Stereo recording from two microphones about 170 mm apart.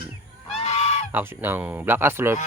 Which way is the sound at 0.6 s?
40° left (ahead or behind).